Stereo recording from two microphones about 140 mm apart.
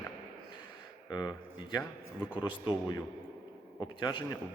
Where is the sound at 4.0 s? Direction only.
35° left (ahead or behind).